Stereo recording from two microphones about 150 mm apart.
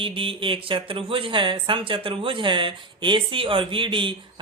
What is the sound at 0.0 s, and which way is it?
Speech, 35° right (ahead or behind).